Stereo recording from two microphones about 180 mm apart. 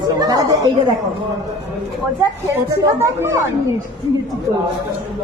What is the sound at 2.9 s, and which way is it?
Speech, 15° right (ahead or behind).